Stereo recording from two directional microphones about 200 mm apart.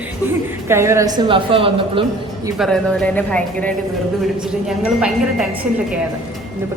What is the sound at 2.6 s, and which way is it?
Speech, 5° left (ahead or behind).